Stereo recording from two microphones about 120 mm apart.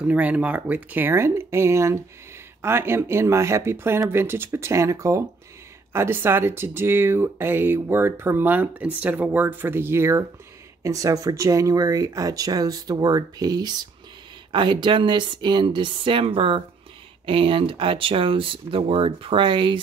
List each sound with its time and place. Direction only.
0.0 s speech: 10° right (ahead or behind); by 19.8 s 45° right (ahead or behind)